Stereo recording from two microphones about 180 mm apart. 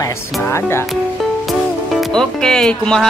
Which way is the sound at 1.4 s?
Centre (ahead or behind).